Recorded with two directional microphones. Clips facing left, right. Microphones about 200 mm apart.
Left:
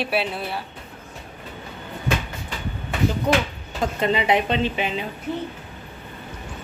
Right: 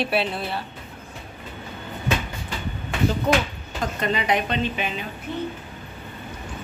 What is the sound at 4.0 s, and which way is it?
A woman's voice, 25° left (ahead or behind).